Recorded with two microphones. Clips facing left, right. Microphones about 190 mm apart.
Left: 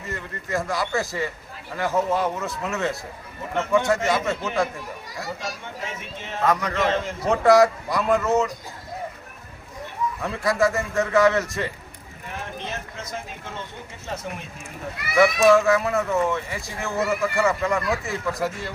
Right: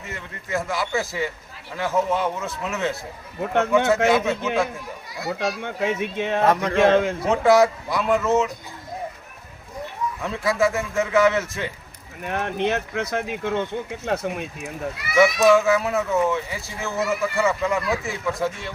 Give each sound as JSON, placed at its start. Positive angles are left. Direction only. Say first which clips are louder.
{"t": 0.0, "sound": "speech", "louder": "left 3 dB", "side_deg": 0}
{"t": 3.5, "sound": "speech", "louder": "right 2 dB", "side_deg": -65}
{"t": 4.2, "sound": "speech", "louder": "right 2 dB", "side_deg": 0}
{"t": 5.4, "sound": "speech", "louder": "right 8 dB", "side_deg": -70}
{"t": 6.4, "sound": "a man's voice", "louder": "right 1 dB", "side_deg": -30}
{"t": 6.7, "sound": "speech", "louder": "right 7 dB", "side_deg": -55}
{"t": 7.3, "sound": "speech", "louder": "left 2 dB", "side_deg": 0}
{"t": 10.2, "sound": "speech", "louder": "even", "side_deg": 0}
{"t": 12.2, "sound": "speech", "louder": "right 10 dB", "side_deg": -70}
{"t": 15.4, "sound": "speech", "louder": "even", "side_deg": 0}